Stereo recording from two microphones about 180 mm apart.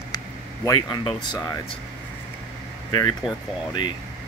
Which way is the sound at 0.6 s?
20° left (ahead or behind).